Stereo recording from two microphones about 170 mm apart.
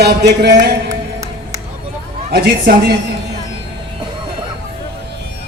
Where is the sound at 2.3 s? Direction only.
65° right (ahead or behind).